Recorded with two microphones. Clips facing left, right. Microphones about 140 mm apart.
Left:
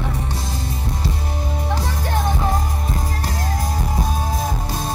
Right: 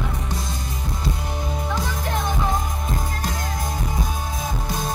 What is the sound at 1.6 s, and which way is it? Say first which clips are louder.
Music: left 3 dB; 30° left (ahead or behind).